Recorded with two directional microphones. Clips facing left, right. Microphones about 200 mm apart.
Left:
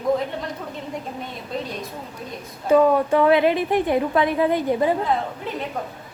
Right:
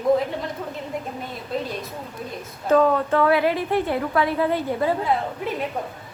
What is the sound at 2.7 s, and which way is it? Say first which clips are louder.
A woman's voice: left 2 dB; 10° left (ahead or behind).